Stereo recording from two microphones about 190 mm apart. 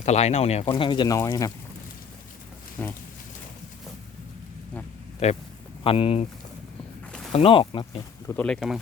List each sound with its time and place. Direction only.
0.0 s speech: 35° left (ahead or behind); by 1.5 s 20° left (ahead or behind)
2.8 s speech: 10° left (ahead or behind)
5.2 s speech: 35° left (ahead or behind)
7.3 s speech: 30° left (ahead or behind)
8.3 s speech: 5° left (ahead or behind)